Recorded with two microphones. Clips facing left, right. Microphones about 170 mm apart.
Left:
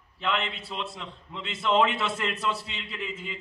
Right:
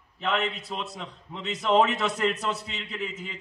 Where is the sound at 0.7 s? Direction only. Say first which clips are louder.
Right 1 dB; 40° right (ahead or behind).